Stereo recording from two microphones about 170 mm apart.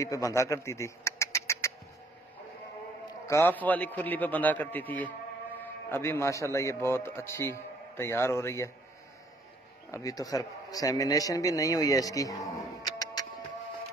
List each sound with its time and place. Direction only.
0.0 s speech: 20° left (ahead or behind)
3.1 s a man's voice: 15° left (ahead or behind)
9.8 s a man's voice: 20° left (ahead or behind)
12.8 s music: 20° left (ahead or behind)